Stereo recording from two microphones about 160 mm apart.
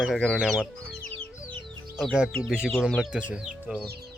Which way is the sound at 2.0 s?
Centre (ahead or behind).